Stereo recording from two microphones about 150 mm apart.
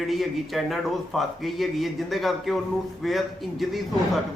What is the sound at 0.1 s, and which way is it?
A man's voice, centre (ahead or behind).